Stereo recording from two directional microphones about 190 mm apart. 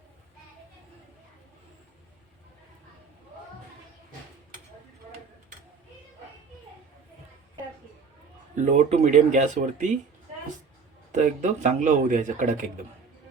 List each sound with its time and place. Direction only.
8.5 s a man's voice: 40° right (ahead or behind)
11.1 s a man's voice: 40° right (ahead or behind)